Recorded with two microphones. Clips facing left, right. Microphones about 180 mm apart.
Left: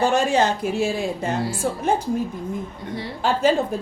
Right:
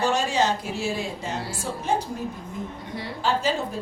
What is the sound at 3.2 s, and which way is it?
Speech, 55° left (ahead or behind).